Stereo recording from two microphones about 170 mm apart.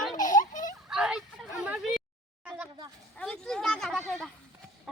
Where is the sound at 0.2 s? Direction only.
50° left (ahead or behind).